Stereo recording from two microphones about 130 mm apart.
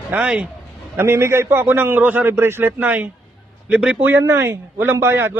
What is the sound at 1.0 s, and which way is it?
A man's voice, 20° right (ahead or behind).